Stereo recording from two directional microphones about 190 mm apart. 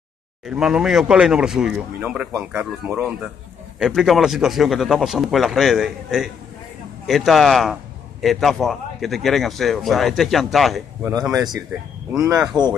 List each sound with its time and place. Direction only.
0.5 s speech: 5° right (ahead or behind)
12.2 s a man's voice: 15° right (ahead or behind)